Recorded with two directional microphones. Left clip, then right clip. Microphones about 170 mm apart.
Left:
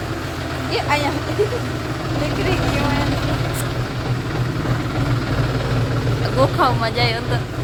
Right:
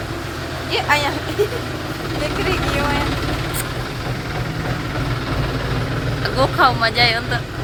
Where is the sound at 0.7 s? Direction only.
Centre (ahead or behind).